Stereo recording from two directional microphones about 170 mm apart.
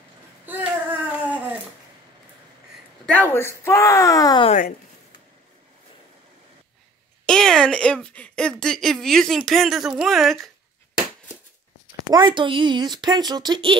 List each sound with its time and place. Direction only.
0.5 s singing: 10° right (ahead or behind)
3.1 s speech: 10° left (ahead or behind)
7.2 s speech: 5° left (ahead or behind)
12.1 s speech: 30° right (ahead or behind)